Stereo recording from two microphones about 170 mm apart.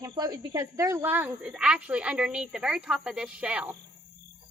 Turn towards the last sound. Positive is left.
turn(degrees=-5)  # may be behind; listen again after turning